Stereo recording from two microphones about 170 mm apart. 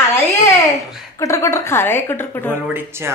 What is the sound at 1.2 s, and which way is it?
A woman's voice, 20° left (ahead or behind).